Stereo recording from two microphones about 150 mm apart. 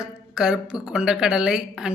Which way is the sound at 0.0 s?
5° right (ahead or behind).